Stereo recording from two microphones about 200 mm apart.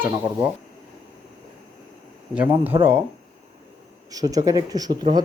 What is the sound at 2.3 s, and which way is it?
Speech, 10° right (ahead or behind).